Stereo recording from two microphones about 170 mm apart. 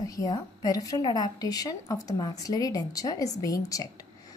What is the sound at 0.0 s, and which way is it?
A woman's voice, 20° left (ahead or behind).